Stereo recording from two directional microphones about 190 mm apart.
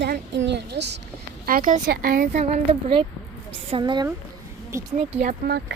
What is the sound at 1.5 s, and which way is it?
Speech, 45° right (ahead or behind).